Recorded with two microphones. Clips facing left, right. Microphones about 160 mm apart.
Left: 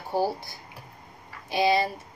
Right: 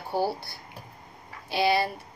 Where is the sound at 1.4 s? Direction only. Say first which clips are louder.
Left 1 dB; 20° left (ahead or behind).